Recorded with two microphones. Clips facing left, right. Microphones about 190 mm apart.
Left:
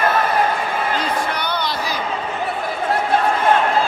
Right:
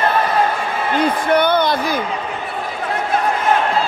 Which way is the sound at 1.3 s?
55° right (ahead or behind).